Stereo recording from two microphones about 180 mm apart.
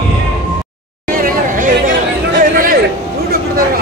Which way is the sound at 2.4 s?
50° right (ahead or behind).